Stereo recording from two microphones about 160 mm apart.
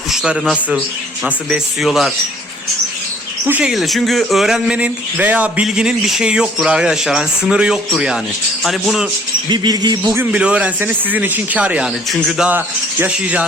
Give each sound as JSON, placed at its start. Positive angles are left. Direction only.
{"t": 0.1, "sound": "speech", "side_deg": -5}
{"t": 3.4, "sound": "speech", "side_deg": -10}
{"t": 9.5, "sound": "a sound", "side_deg": -25}
{"t": 10.2, "sound": "speech", "side_deg": -10}